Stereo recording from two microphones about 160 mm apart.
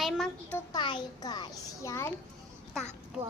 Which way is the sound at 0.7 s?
30° left (ahead or behind).